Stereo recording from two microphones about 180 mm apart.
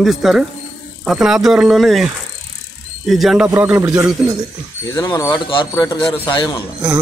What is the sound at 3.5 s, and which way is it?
Speech, 15° right (ahead or behind).